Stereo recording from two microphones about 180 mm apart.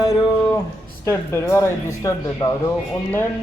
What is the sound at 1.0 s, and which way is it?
Speech, 15° left (ahead or behind).